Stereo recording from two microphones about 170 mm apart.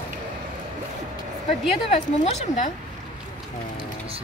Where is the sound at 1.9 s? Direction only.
40° left (ahead or behind).